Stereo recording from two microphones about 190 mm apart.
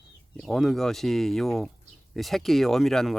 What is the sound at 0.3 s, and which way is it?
Speech, centre (ahead or behind).